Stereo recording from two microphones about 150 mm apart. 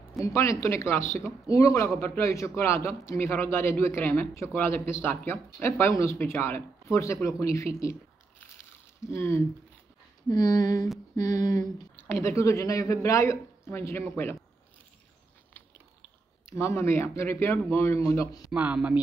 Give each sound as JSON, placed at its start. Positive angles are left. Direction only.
{"t": 0.2, "sound": "speech", "side_deg": 20}
{"t": 9.0, "sound": "speech", "side_deg": 15}
{"t": 15.5, "sound": "speech", "side_deg": 15}
{"t": 18.5, "sound": "speech", "side_deg": -10}